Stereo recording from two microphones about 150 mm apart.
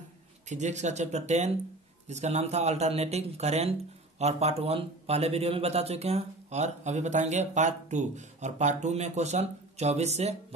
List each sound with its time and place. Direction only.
0.5 s speech: 50° right (ahead or behind)